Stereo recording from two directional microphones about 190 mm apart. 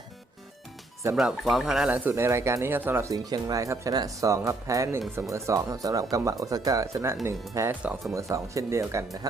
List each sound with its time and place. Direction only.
1.1 s speech: centre (ahead or behind)